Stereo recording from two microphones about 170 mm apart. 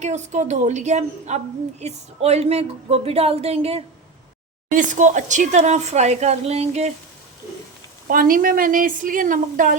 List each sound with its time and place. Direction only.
0.0 s speech: 45° right (ahead or behind)
4.7 s speech: 50° right (ahead or behind)
8.0 s speech: 55° right (ahead or behind)